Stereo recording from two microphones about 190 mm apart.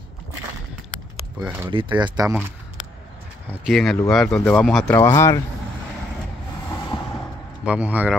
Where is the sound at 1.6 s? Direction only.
25° right (ahead or behind).